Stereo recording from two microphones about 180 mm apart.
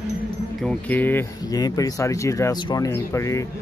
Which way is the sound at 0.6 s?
5° left (ahead or behind).